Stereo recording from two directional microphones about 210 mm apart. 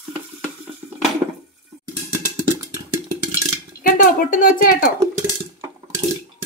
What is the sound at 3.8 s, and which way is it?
Speech, 45° left (ahead or behind).